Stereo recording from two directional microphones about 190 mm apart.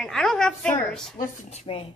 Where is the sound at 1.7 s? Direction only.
30° left (ahead or behind).